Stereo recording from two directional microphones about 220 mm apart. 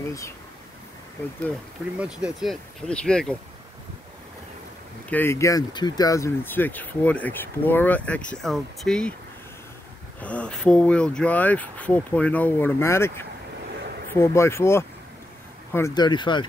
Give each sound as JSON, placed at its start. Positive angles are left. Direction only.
{"t": 2.0, "sound": "speech", "side_deg": -5}
{"t": 5.1, "sound": "speech", "side_deg": 10}
{"t": 10.2, "sound": "speech", "side_deg": 5}